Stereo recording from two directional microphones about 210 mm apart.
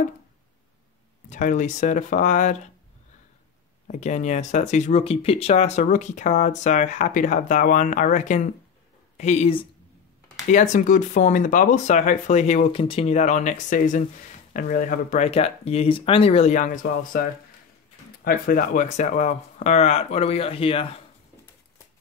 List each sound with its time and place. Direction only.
1.3 s speech: 35° left (ahead or behind)
3.8 s speech: 35° left (ahead or behind)